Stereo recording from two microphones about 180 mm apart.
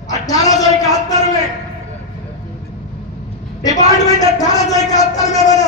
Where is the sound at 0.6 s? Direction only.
20° left (ahead or behind).